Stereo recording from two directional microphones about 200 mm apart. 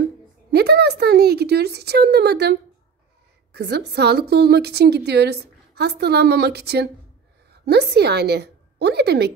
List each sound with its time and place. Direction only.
0.5 s speech: 55° right (ahead or behind)
3.5 s a woman's voice: 55° right (ahead or behind)